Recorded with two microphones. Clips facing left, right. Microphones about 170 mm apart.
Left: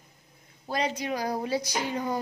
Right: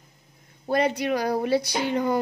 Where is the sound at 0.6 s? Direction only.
60° right (ahead or behind).